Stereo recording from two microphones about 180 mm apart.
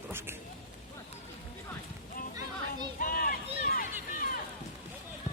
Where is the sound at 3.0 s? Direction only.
50° left (ahead or behind).